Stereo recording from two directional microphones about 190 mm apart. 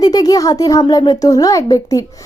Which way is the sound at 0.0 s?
20° left (ahead or behind).